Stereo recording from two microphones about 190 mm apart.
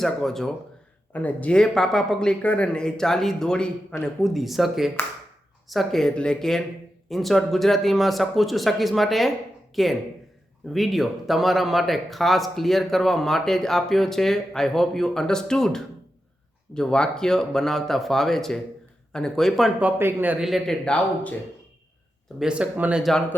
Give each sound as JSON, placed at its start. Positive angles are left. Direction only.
{"t": 0.0, "sound": "speech", "side_deg": 0}
{"t": 20.0, "sound": "speech", "side_deg": -10}
{"t": 22.4, "sound": "speech", "side_deg": -5}